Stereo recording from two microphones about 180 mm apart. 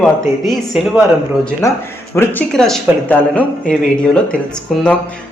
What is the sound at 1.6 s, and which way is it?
Speech, 15° left (ahead or behind).